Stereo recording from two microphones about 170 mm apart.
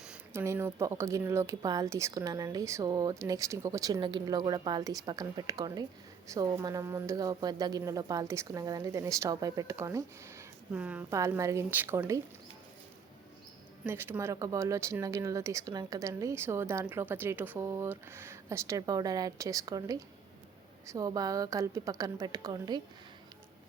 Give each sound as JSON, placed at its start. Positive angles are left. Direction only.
{"t": 0.0, "sound": "a sound", "side_deg": -5}
{"t": 0.4, "sound": "speech", "side_deg": -15}
{"t": 13.8, "sound": "speech", "side_deg": -15}